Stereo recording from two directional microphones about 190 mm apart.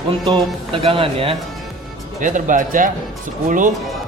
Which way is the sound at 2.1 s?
45° right (ahead or behind).